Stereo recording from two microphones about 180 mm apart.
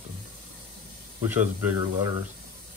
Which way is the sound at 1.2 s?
10° right (ahead or behind).